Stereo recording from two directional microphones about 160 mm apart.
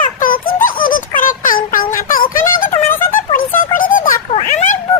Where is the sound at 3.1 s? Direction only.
60° left (ahead or behind).